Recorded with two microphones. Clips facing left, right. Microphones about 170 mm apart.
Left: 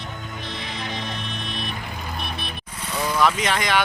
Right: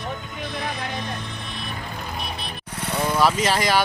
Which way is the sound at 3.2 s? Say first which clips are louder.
Right 1 dB; 35° right (ahead or behind).